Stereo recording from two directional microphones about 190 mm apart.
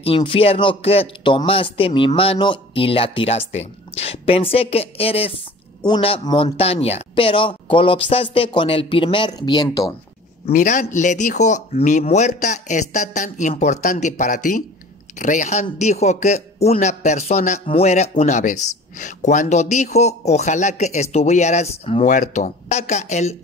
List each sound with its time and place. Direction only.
0.0 s speech: 30° left (ahead or behind)
10.4 s speech: 40° left (ahead or behind)